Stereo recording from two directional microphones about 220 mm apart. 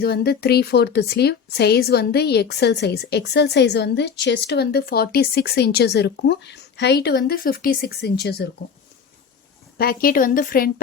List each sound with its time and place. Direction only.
0.0 s a woman's voice: 45° left (ahead or behind)
9.7 s a woman's voice: 45° left (ahead or behind)